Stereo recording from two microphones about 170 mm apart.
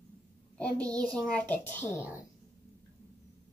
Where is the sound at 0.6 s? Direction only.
5° left (ahead or behind).